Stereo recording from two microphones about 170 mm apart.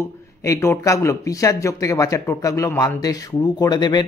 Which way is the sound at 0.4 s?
15° left (ahead or behind).